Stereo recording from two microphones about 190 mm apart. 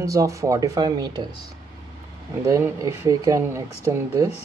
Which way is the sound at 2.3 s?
15° right (ahead or behind).